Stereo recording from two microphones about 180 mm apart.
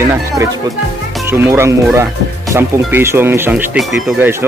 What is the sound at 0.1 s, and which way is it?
Speech, 15° right (ahead or behind).